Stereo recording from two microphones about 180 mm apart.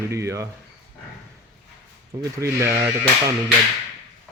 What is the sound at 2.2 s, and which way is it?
Speech, 15° right (ahead or behind).